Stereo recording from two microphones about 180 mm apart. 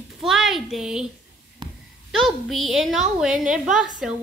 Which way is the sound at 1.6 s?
25° right (ahead or behind).